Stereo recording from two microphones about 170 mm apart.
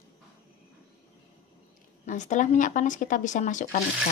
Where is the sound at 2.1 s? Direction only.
45° left (ahead or behind).